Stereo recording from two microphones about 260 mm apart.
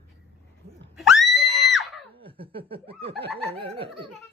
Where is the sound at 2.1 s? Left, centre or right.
Right.